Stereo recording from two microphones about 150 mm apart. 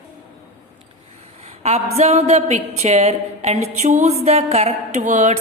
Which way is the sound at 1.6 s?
50° right (ahead or behind).